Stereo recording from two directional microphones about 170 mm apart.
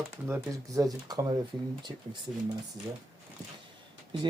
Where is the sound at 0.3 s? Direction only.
15° right (ahead or behind).